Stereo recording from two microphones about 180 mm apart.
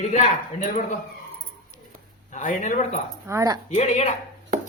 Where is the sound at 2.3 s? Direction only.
45° left (ahead or behind).